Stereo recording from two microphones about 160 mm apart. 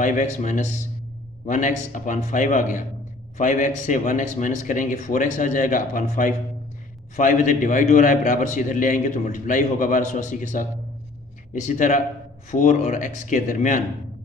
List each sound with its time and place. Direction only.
0.0 s a man's voice: 50° left (ahead or behind)